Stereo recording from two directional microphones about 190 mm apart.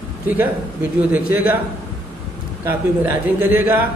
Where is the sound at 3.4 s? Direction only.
10° right (ahead or behind).